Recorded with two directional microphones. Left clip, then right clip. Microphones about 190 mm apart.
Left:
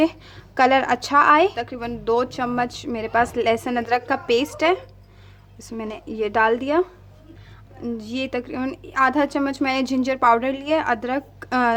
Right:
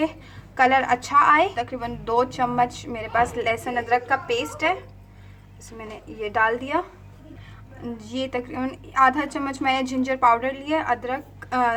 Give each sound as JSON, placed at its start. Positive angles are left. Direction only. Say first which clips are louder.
{"t": 0.0, "sound": "a woman's voice", "louder": "left 5 dB", "side_deg": 50}
{"t": 7.9, "sound": "a woman's voice", "louder": "left 1 dB", "side_deg": 40}